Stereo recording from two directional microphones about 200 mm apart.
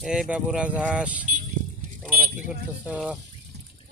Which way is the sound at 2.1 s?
45° right (ahead or behind).